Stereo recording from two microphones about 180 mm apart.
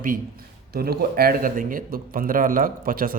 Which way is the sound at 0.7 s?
60° right (ahead or behind).